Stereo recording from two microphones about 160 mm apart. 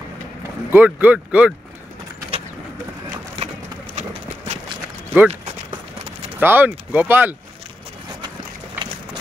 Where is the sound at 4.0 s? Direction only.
45° right (ahead or behind).